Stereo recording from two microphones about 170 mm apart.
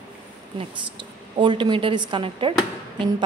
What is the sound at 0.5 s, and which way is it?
A woman's voice, 30° right (ahead or behind).